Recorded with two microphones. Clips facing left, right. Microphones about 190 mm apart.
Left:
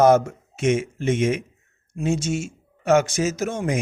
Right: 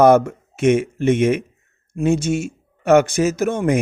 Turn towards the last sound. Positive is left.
turn(degrees=-60)  # may be behind; listen again after turning